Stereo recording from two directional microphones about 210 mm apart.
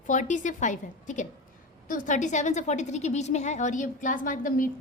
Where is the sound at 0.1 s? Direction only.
35° left (ahead or behind).